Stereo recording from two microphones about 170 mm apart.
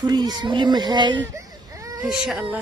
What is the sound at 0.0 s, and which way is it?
Speech, 25° right (ahead or behind).